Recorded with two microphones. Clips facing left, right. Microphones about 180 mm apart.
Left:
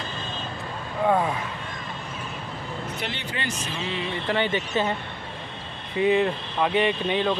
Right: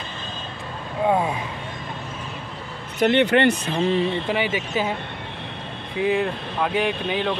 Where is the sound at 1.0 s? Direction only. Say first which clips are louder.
Right 1 dB; 15° right (ahead or behind).